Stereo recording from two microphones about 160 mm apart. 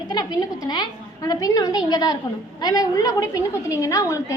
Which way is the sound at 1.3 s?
25° left (ahead or behind).